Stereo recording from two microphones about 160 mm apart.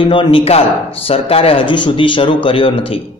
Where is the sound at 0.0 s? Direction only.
30° left (ahead or behind).